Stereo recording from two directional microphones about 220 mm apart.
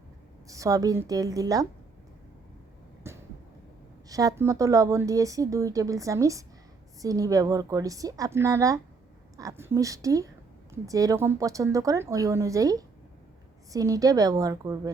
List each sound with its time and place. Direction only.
0.4 s speech: 15° right (ahead or behind)
3.1 s vehicle: 10° right (ahead or behind)
4.1 s speech: 15° right (ahead or behind)